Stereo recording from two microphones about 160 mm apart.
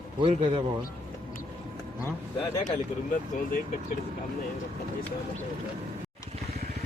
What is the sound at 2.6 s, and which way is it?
Speech, 55° left (ahead or behind).